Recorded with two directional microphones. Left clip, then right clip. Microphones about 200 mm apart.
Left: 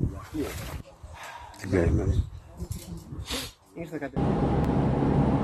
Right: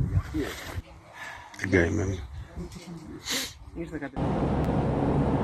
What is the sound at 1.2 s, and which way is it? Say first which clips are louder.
Bow-wow: right 4 dB; 10° right (ahead or behind).